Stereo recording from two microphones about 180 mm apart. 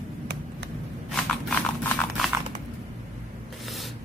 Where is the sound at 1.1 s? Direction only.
5° left (ahead or behind).